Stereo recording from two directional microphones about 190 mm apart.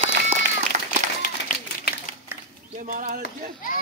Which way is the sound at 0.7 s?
40° right (ahead or behind).